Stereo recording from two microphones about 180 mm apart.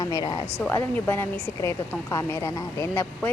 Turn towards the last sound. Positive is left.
turn(degrees=15)  # may be behind; listen again after turning